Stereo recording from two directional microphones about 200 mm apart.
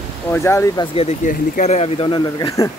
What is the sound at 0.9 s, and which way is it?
Speech, 35° left (ahead or behind).